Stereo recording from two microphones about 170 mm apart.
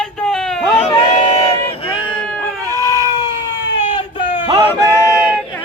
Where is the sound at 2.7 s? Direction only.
20° left (ahead or behind).